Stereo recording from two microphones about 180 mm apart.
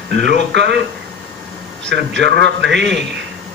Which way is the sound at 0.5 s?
70° right (ahead or behind).